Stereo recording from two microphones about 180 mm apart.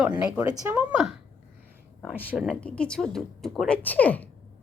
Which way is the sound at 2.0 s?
5° left (ahead or behind).